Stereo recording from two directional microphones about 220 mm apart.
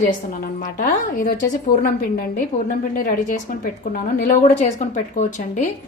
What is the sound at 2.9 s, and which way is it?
Speech, 40° left (ahead or behind).